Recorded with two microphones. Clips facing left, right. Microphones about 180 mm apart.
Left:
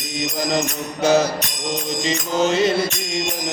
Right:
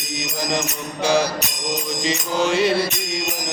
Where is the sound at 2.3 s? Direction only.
25° left (ahead or behind).